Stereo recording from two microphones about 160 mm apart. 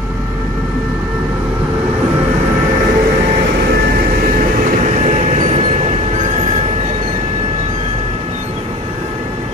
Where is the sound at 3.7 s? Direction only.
65° right (ahead or behind); by 8.5 s 40° right (ahead or behind).